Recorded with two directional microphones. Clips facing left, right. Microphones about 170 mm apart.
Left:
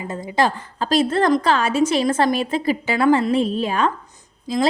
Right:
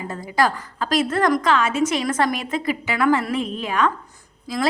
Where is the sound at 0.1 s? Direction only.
25° left (ahead or behind).